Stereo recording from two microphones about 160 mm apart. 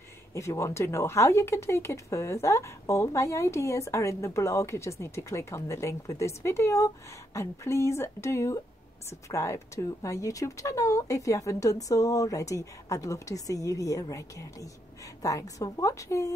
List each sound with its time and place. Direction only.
0.3 s speech: 20° left (ahead or behind)